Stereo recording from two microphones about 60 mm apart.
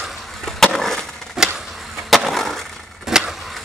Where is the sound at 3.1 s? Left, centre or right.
Centre.